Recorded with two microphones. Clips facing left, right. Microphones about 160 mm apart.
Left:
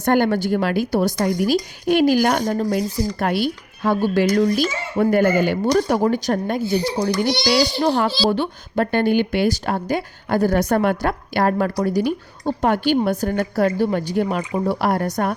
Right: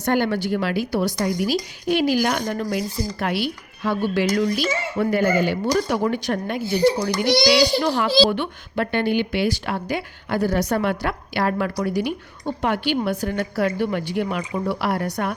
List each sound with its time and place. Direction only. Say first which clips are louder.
0.0 s a woman's voice: left 3 dB; 50° left (ahead or behind)